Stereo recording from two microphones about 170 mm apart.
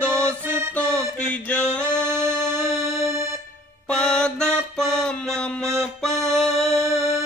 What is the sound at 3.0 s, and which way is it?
Music, 15° right (ahead or behind).